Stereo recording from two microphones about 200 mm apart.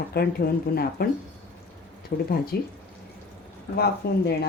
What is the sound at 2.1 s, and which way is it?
Speech, 45° left (ahead or behind).